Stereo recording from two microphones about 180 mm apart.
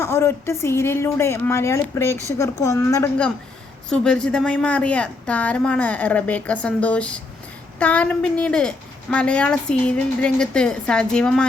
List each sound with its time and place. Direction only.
0.0 s a woman's voice: 15° left (ahead or behind)